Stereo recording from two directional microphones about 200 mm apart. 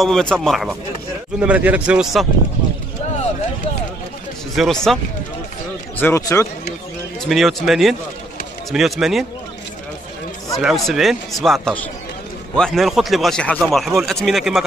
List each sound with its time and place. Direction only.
0.0 s a man's voice: 5° left (ahead or behind)
4.6 s speech: centre (ahead or behind)
5.9 s speech: 10° left (ahead or behind)
7.2 s speech: centre (ahead or behind)
10.6 s speech: centre (ahead or behind)